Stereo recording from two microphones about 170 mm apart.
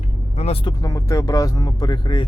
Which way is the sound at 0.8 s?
20° left (ahead or behind).